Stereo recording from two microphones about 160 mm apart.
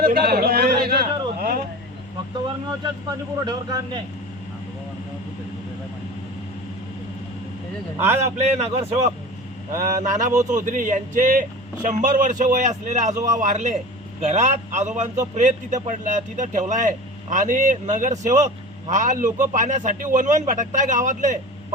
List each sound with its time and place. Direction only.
0.0 s a sound: 75° right (ahead or behind)
2.8 s speech: 25° right (ahead or behind)
7.9 s a man's voice: 15° right (ahead or behind)
8.4 s a man's voice: 45° right (ahead or behind)
9.7 s a man's voice: 55° right (ahead or behind)